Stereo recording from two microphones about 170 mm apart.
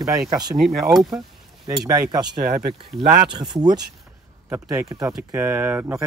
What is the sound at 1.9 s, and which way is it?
Speech, 20° right (ahead or behind).